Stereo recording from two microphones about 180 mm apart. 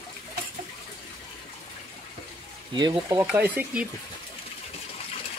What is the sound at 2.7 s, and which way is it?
Speech, 25° right (ahead or behind).